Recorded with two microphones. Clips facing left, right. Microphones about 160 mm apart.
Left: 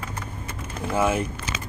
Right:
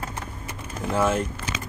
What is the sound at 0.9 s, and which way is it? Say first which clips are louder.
Speech: even; 10° left (ahead or behind).